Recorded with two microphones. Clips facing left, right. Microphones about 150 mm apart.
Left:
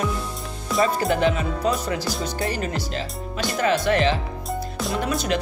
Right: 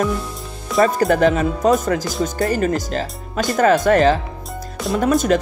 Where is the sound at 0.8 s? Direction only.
45° right (ahead or behind).